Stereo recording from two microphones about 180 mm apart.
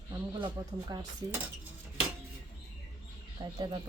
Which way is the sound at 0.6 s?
15° right (ahead or behind).